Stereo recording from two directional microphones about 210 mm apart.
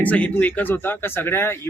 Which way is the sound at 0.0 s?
5° left (ahead or behind).